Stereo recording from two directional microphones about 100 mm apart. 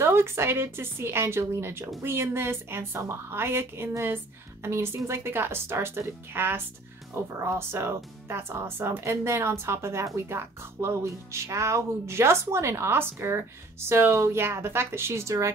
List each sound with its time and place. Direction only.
0.0 s speech: 25° right (ahead or behind)